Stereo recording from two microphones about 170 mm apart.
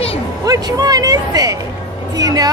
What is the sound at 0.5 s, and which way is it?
Speech, 25° right (ahead or behind).